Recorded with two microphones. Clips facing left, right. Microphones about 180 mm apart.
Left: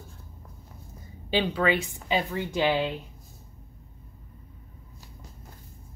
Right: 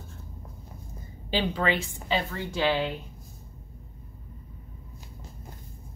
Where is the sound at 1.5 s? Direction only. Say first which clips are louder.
Left 2 dB; 10° left (ahead or behind).